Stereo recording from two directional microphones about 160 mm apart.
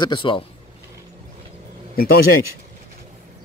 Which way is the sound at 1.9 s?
70° left (ahead or behind).